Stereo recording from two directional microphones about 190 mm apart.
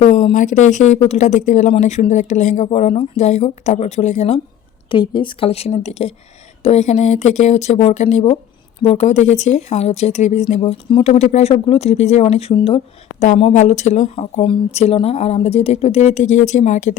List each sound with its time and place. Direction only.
0.0 s speech: 35° left (ahead or behind)
4.9 s speech: 25° left (ahead or behind)